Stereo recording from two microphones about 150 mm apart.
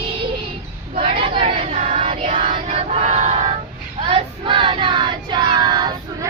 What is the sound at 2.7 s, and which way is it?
Battle cry, 45° right (ahead or behind).